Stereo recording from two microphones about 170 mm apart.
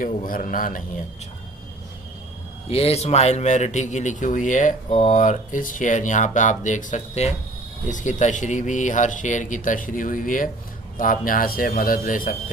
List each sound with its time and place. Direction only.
0.0 s speech: 55° left (ahead or behind)
2.7 s a man's voice: 35° left (ahead or behind); by 12.4 s 55° left (ahead or behind)